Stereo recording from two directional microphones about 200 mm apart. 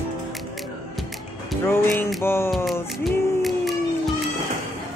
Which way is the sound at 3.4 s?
Centre (ahead or behind).